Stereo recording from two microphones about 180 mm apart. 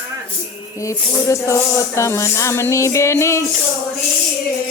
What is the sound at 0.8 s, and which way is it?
Speech, 15° left (ahead or behind).